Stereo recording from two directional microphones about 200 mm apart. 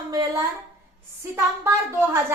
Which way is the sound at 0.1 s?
20° right (ahead or behind).